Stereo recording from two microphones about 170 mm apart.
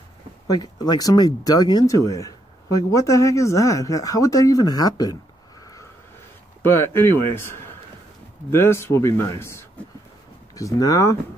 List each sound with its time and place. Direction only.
0.6 s speech: 20° left (ahead or behind)
6.8 s a man's voice: 15° left (ahead or behind)